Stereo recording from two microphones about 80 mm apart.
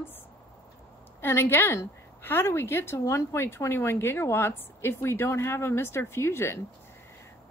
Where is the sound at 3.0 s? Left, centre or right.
Left.